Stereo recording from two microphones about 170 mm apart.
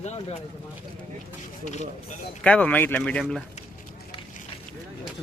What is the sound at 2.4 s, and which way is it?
Speech, 5° left (ahead or behind).